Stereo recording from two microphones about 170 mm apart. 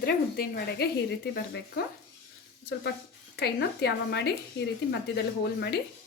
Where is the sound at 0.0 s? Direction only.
65° left (ahead or behind).